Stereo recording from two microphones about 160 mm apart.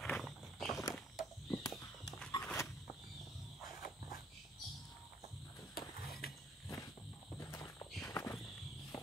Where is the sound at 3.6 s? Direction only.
60° left (ahead or behind).